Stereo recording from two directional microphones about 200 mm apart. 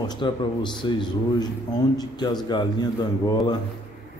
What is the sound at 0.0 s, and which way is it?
A man's voice, 20° left (ahead or behind).